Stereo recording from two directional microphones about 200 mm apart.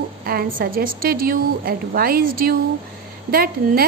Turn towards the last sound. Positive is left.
turn(degrees=-50)  # may be behind; listen again after turning